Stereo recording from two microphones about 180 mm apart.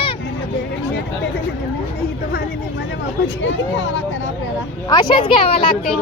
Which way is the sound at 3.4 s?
90° left.